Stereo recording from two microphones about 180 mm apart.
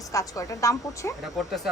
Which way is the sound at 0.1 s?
20° left (ahead or behind).